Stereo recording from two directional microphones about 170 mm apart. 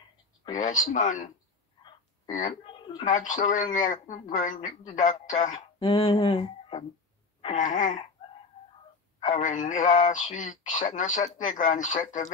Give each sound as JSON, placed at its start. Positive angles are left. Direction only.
{"t": 0.6, "sound": "speech", "side_deg": 50}
{"t": 2.6, "sound": "a sound", "side_deg": 30}
{"t": 3.1, "sound": "speech", "side_deg": 50}
{"t": 5.8, "sound": "a sound", "side_deg": 30}
{"t": 7.5, "sound": "speech", "side_deg": 50}
{"t": 9.4, "sound": "speech", "side_deg": 45}